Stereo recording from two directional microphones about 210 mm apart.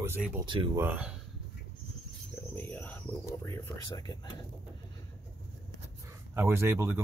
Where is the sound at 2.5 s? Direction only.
10° left (ahead or behind).